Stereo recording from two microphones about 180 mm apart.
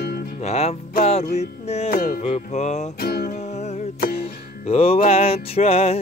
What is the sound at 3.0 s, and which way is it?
Music, 55° left (ahead or behind).